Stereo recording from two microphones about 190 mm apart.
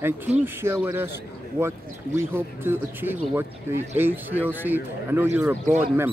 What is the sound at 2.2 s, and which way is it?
Speech, 10° right (ahead or behind).